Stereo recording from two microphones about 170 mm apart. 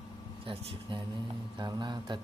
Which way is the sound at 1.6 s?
25° right (ahead or behind).